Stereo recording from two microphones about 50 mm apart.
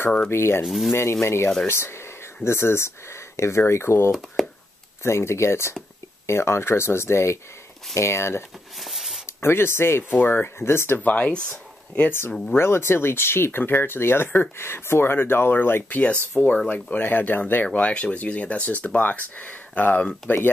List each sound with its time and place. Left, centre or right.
0.3 s speech: left
0.7 s speech: centre
1.2 s speech: left
4.4 s a sound: centre
5.0 s speech: left
8.7 s a sound: centre
9.2 s speech: left
10.2 s speech: left
11.0 s speech: left
12.5 s speech: left
15.9 s speech: left
16.7 s speech: left
17.7 s speech: left